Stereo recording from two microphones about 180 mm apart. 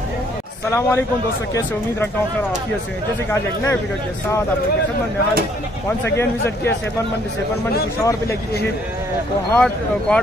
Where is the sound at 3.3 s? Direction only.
15° left (ahead or behind).